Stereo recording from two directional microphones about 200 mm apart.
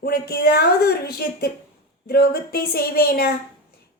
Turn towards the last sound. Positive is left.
turn(degrees=50)  # may be behind; listen again after turning